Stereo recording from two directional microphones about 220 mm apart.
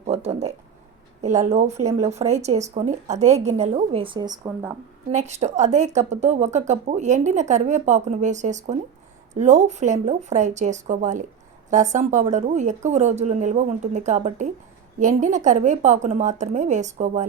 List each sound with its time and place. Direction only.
0.0 s speech: 30° right (ahead or behind)
5.1 s speech: 30° right (ahead or behind)